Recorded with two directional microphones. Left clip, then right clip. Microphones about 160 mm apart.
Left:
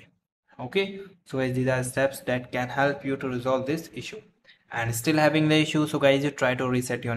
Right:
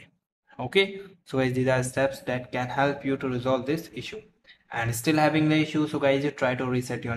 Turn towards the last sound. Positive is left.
turn(degrees=10)  # may be behind; listen again after turning